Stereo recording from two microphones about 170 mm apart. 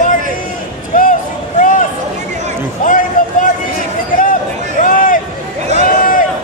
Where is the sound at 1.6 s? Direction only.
50° left (ahead or behind).